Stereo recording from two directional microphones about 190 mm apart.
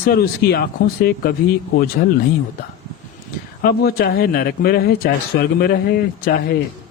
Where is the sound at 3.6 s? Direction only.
55° left (ahead or behind).